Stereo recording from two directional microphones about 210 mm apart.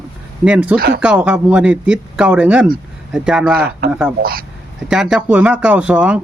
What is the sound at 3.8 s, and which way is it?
Speech, 50° right (ahead or behind).